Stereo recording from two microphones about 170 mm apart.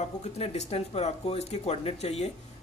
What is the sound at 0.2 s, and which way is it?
Speech, 40° left (ahead or behind).